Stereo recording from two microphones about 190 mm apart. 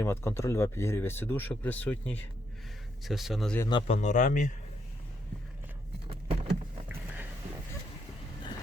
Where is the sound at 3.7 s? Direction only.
30° left (ahead or behind).